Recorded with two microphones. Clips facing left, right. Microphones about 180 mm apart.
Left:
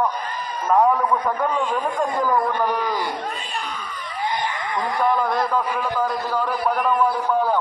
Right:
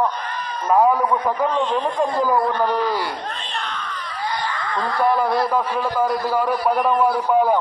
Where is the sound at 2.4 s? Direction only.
15° left (ahead or behind).